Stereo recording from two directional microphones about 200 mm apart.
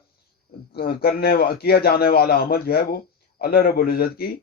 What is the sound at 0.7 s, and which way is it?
Speech, 50° left (ahead or behind).